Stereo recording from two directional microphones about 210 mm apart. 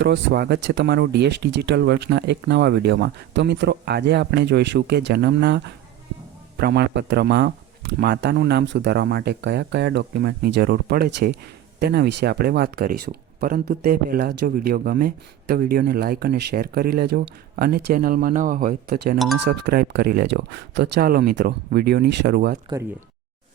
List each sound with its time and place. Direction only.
0.0 s speech: 55° right (ahead or behind)